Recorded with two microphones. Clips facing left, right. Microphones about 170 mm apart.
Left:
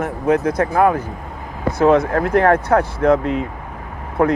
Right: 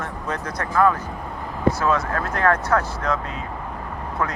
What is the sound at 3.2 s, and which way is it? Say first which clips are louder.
Speech: left 11 dB; 20° left (ahead or behind).